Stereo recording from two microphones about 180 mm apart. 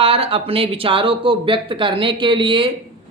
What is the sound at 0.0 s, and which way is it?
Speech, 30° right (ahead or behind).